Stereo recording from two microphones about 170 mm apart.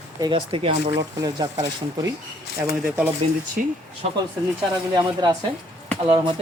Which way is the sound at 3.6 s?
55° right (ahead or behind).